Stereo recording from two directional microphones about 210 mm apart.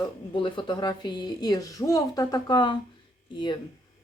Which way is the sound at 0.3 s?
25° left (ahead or behind).